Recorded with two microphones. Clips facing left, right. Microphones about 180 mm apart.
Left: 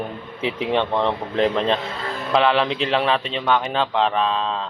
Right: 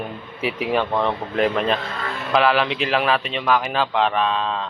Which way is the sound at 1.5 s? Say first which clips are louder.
Left 1 dB; 25° left (ahead or behind).